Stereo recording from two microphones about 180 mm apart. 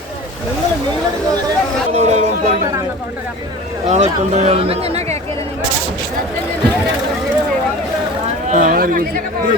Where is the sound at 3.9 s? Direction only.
40° right (ahead or behind).